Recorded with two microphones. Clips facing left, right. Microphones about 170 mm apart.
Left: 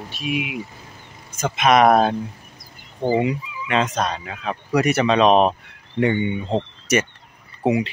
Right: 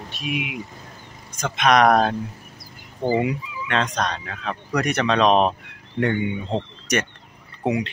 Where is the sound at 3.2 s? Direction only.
Centre (ahead or behind).